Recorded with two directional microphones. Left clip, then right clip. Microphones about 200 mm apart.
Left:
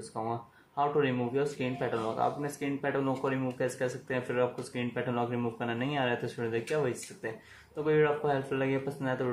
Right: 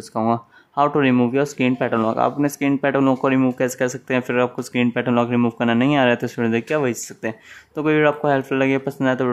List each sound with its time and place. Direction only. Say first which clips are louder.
0.1 s speech: right 15 dB; 50° right (ahead or behind)